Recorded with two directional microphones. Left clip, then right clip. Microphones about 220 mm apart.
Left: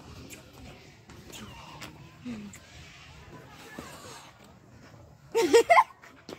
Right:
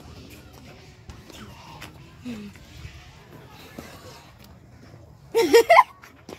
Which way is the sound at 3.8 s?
30° right (ahead or behind).